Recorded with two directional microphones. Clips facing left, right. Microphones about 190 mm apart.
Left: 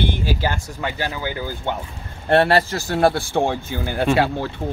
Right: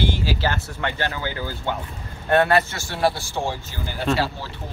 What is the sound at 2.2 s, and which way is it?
Speech, 30° left (ahead or behind).